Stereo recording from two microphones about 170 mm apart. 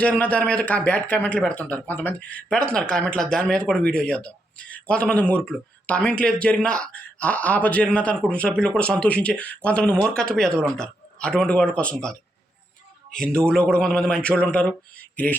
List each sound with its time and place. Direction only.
0.0 s speech: 10° left (ahead or behind)